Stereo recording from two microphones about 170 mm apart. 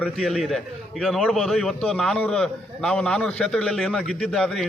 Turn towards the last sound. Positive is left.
turn(degrees=0)  # may be behind; listen again after turning